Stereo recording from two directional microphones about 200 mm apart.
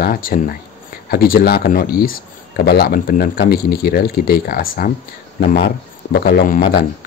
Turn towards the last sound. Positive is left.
turn(degrees=45)  # may be behind; listen again after turning